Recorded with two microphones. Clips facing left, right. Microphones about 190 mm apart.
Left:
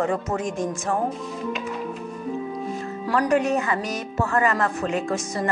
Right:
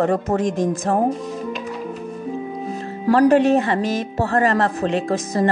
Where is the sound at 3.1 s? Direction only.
35° right (ahead or behind).